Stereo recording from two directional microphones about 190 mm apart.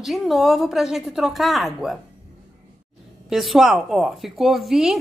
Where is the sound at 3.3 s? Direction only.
Centre (ahead or behind).